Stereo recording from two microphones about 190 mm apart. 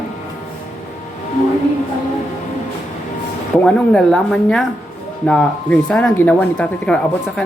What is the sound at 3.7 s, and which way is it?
Speech, 5° left (ahead or behind).